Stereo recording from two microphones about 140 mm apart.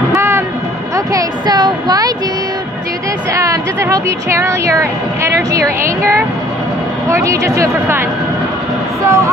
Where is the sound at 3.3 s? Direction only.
25° right (ahead or behind).